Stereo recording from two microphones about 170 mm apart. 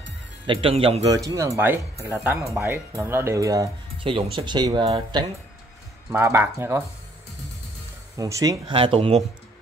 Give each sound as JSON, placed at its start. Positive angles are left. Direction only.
{"t": 0.5, "sound": "speech", "side_deg": -35}
{"t": 1.1, "sound": "speech", "side_deg": -20}
{"t": 4.0, "sound": "speech", "side_deg": -30}
{"t": 6.1, "sound": "speech", "side_deg": -15}
{"t": 8.2, "sound": "speech", "side_deg": -20}
{"t": 8.7, "sound": "speech", "side_deg": -30}